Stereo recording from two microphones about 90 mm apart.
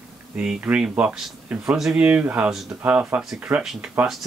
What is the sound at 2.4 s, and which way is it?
Speech, 5° right (ahead or behind).